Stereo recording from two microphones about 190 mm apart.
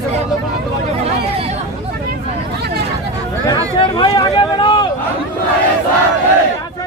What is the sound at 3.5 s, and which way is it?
Speech, 20° left (ahead or behind).